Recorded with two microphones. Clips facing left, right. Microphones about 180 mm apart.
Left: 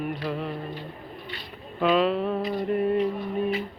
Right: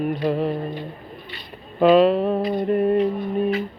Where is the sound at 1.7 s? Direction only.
45° right (ahead or behind).